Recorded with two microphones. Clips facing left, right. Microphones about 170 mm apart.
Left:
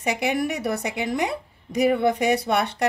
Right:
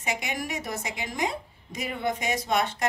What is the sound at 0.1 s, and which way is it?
A woman's voice, 65° left (ahead or behind).